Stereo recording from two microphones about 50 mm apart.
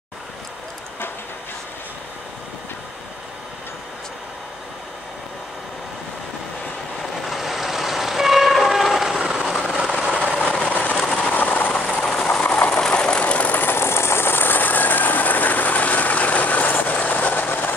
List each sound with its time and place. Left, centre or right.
7.0 s train: centre
9.2 s vehicle: centre
9.7 s train: centre
10.4 s vehicle: left
11.2 s train: left
12.1 s train: centre
12.9 s vehicle: left
13.5 s vehicle: left